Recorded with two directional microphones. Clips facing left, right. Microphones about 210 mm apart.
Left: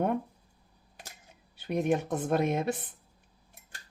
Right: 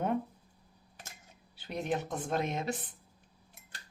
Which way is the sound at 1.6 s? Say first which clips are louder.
Left 6 dB; 55° left (ahead or behind).